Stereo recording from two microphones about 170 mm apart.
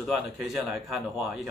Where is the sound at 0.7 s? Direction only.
Centre (ahead or behind).